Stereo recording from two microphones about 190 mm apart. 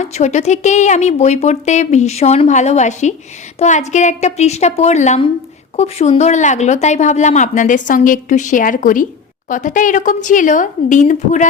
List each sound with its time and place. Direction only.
0.0 s speech: 35° left (ahead or behind)